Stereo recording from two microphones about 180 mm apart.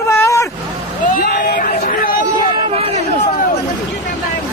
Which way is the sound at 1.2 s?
55° left (ahead or behind).